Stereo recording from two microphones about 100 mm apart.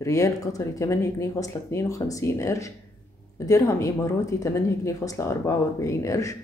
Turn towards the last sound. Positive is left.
turn(degrees=30)  # may be behind; listen again after turning